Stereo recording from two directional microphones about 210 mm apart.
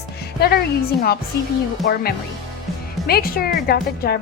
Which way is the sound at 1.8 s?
45° left (ahead or behind).